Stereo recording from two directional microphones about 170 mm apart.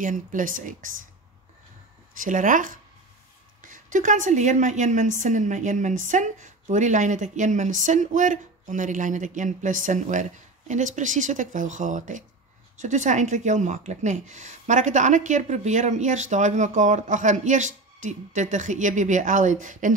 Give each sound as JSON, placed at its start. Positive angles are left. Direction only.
{"t": 0.0, "sound": "a woman's voice", "side_deg": -50}
{"t": 2.2, "sound": "a woman's voice", "side_deg": -50}